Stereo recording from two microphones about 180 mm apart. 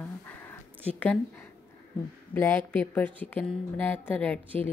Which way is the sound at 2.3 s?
10° left (ahead or behind).